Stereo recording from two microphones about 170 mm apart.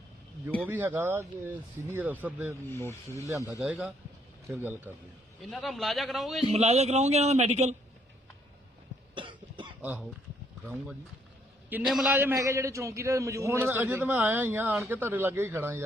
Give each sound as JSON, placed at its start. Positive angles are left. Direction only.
{"t": 0.7, "sound": "a man's voice", "side_deg": -10}
{"t": 2.6, "sound": "speech", "side_deg": 15}
{"t": 3.2, "sound": "a man's voice", "side_deg": -15}
{"t": 3.6, "sound": "a man's voice", "side_deg": -5}
{"t": 5.4, "sound": "a man's voice", "side_deg": 0}
{"t": 6.5, "sound": "a man's voice", "side_deg": -40}
{"t": 9.1, "sound": "cough", "side_deg": -30}
{"t": 9.8, "sound": "a man's voice", "side_deg": -10}
{"t": 11.9, "sound": "a man's voice", "side_deg": 0}
{"t": 12.1, "sound": "a man's voice", "side_deg": -15}